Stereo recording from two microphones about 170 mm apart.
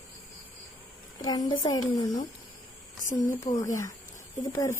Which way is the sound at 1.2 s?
25° left (ahead or behind).